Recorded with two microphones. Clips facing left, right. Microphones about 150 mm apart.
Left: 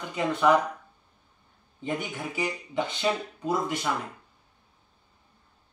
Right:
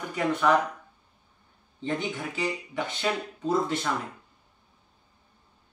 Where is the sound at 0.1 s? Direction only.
15° left (ahead or behind).